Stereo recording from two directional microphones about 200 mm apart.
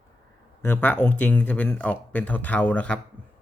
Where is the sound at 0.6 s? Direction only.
10° left (ahead or behind).